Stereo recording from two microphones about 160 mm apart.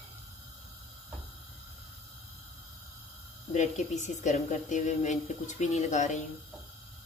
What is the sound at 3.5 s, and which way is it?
Speech, 50° left (ahead or behind).